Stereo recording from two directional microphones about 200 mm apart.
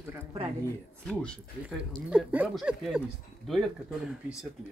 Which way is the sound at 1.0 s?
Centre (ahead or behind).